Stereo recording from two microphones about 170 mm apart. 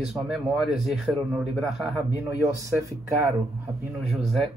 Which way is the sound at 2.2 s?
20° right (ahead or behind).